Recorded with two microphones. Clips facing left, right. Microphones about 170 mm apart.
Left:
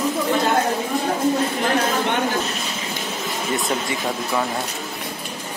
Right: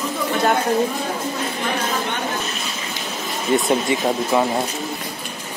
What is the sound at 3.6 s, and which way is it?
Speech, 20° right (ahead or behind).